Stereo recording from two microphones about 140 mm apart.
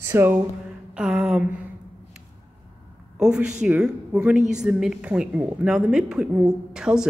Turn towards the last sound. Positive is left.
turn(degrees=-5)  # may be behind; listen again after turning